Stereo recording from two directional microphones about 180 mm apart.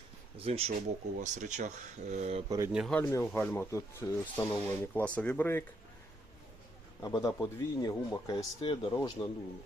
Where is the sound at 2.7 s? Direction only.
Centre (ahead or behind).